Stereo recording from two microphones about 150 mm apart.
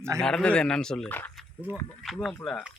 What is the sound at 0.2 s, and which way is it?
Speech, 5° left (ahead or behind).